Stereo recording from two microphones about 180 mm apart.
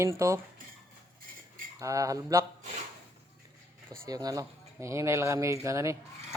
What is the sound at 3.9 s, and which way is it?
Speech, 20° right (ahead or behind).